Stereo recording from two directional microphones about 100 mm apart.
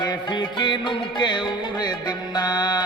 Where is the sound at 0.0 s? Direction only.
50° left (ahead or behind).